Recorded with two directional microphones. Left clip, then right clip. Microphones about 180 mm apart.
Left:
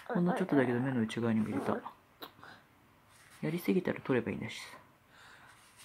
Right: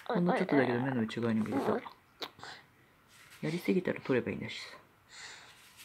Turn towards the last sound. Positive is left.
turn(degrees=5)  # may be behind; listen again after turning